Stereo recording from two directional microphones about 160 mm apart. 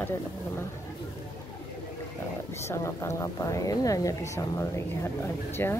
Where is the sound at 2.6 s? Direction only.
15° left (ahead or behind).